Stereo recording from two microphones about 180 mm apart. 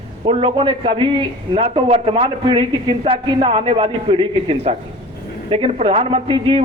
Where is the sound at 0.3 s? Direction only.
30° right (ahead or behind).